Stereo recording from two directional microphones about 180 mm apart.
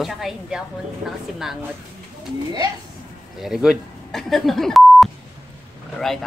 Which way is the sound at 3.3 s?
Centre (ahead or behind).